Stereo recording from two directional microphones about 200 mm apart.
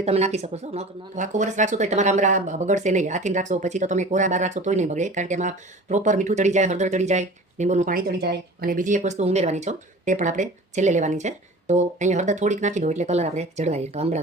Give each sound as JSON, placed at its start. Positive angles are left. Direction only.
{"t": 0.0, "sound": "speech", "side_deg": -30}